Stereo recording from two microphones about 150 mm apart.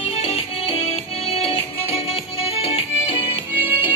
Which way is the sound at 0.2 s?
40° left (ahead or behind).